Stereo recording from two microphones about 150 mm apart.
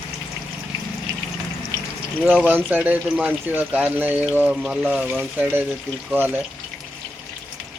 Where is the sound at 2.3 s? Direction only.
10° right (ahead or behind).